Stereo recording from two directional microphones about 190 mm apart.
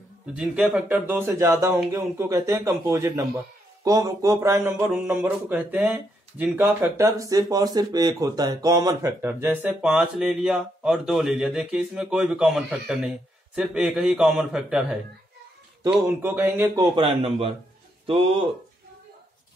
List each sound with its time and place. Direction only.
0.3 s a man's voice: 5° right (ahead or behind)
16.9 s a man's voice: 30° right (ahead or behind)